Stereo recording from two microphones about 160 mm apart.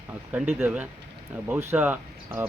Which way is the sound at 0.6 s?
10° right (ahead or behind).